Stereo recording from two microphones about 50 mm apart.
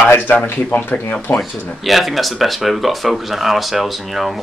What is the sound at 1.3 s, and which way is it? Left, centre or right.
Speech, left.